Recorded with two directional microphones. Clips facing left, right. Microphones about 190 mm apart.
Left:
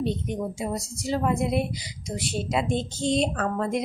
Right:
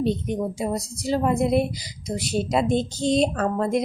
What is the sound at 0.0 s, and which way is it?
A woman's voice, 35° right (ahead or behind).